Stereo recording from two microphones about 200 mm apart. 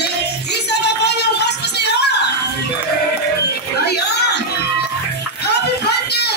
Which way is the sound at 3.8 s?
55° left (ahead or behind).